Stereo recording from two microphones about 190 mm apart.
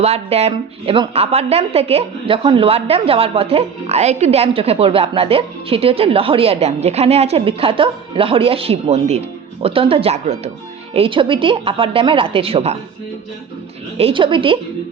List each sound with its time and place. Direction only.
0.0 s a woman's voice: 35° right (ahead or behind)
14.0 s a woman's voice: 25° right (ahead or behind)